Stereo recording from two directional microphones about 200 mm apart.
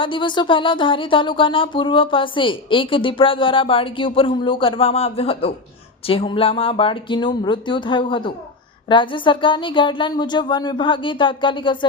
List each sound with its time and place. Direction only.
0.0 s speech: 25° left (ahead or behind)